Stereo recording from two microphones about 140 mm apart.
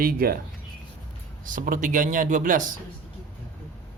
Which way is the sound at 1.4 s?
70° right (ahead or behind).